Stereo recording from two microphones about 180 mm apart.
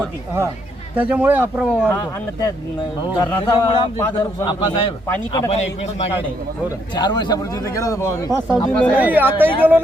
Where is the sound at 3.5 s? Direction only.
25° left (ahead or behind).